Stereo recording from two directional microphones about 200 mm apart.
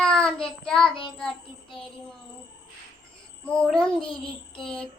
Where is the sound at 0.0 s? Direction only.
5° left (ahead or behind).